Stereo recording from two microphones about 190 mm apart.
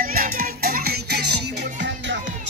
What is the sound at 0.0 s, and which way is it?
Music, 50° right (ahead or behind).